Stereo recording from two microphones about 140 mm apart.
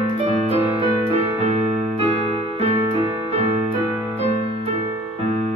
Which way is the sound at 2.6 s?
45° right (ahead or behind).